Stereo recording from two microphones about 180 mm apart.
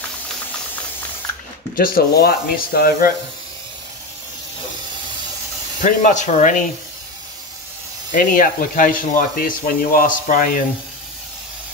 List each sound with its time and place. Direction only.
1.8 s speech: 55° left (ahead or behind)
5.8 s speech: 45° left (ahead or behind)
8.1 s speech: 50° left (ahead or behind)